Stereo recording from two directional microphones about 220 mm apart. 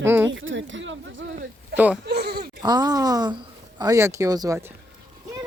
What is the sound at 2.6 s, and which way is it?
Speech, 15° right (ahead or behind).